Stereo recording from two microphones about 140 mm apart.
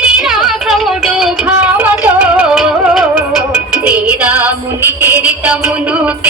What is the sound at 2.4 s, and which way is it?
Music, 5° right (ahead or behind).